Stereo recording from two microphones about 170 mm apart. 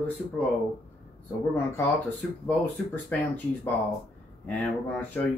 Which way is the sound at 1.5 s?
10° left (ahead or behind).